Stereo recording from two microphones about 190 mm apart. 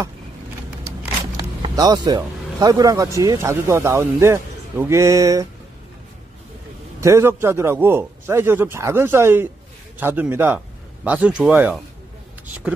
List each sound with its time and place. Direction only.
1.6 s speech: 20° right (ahead or behind)
7.0 s speech: 15° right (ahead or behind)